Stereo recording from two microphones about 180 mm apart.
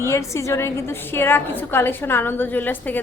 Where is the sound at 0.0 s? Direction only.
15° left (ahead or behind).